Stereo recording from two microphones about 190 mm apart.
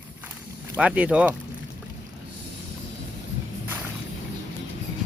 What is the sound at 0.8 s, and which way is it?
Speech, 5° right (ahead or behind).